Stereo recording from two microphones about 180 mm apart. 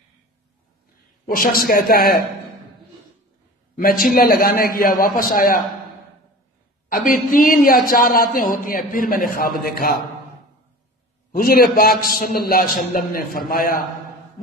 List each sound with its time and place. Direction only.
1.3 s a man's voice: 55° left (ahead or behind)
3.7 s a man's voice: 50° left (ahead or behind)
6.9 s a man's voice: 50° left (ahead or behind)
11.3 s a man's voice: 55° left (ahead or behind)